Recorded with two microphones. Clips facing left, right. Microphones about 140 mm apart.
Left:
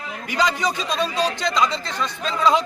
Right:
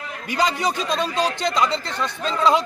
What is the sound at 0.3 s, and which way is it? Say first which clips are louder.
Speech: even; 20° right (ahead or behind).